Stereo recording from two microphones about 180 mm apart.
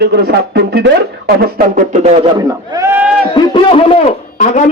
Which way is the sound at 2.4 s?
20° right (ahead or behind).